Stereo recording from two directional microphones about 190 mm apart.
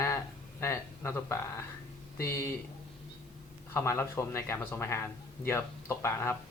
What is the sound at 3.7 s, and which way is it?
Speech, 15° left (ahead or behind).